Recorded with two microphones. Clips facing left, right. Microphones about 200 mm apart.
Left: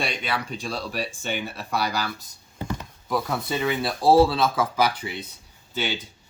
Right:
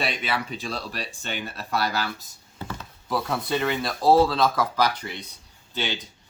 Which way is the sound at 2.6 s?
15° left (ahead or behind).